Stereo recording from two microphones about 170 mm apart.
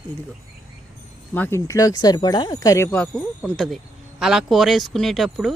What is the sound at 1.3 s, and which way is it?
Speech, 15° left (ahead or behind).